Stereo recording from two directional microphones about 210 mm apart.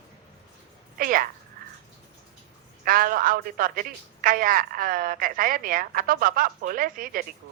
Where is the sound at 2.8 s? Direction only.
40° right (ahead or behind).